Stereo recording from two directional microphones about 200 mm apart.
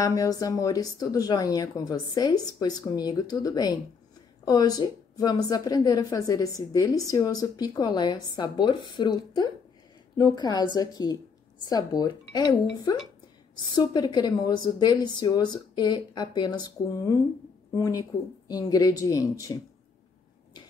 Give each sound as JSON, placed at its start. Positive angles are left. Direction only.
{"t": 0.0, "sound": "speech", "side_deg": 15}
{"t": 13.7, "sound": "speech", "side_deg": 20}